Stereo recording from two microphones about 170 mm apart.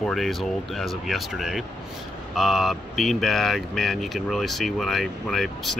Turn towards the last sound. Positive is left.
turn(degrees=0)  # may be behind; listen again after turning